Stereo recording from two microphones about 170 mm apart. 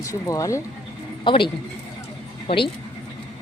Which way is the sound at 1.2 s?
30° left (ahead or behind).